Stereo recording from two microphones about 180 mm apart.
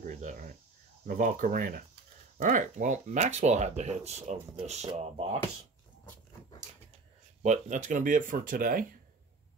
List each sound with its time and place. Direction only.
0.0 s speech: 45° right (ahead or behind)
7.4 s speech: 40° right (ahead or behind)